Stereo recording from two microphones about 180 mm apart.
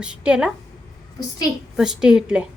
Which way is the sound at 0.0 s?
5° right (ahead or behind).